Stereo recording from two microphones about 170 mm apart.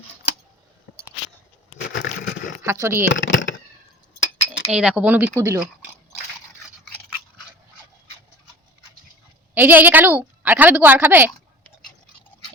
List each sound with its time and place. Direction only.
1.9 s a sound: 90° left
2.6 s a woman's voice: 15° right (ahead or behind)
3.1 s speech: 90° left
4.7 s a woman's voice: 5° right (ahead or behind)
9.6 s a woman's voice: 10° right (ahead or behind)